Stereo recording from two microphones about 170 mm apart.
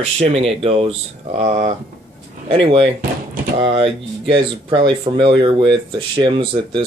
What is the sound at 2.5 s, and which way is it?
Speech, 30° right (ahead or behind).